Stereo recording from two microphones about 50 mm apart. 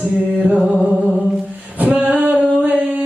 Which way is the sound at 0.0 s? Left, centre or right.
Right.